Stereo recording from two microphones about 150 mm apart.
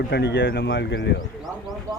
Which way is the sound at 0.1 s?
90° left.